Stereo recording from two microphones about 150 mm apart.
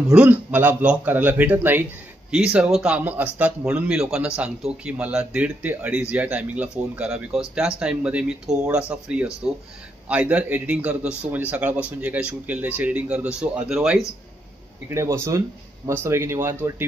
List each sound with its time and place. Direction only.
0.1 s a man's voice: 10° right (ahead or behind)
14.9 s a man's voice: 20° right (ahead or behind)